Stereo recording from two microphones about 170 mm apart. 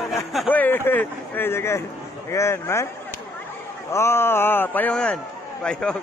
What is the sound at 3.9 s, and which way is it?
A man's voice, 15° left (ahead or behind).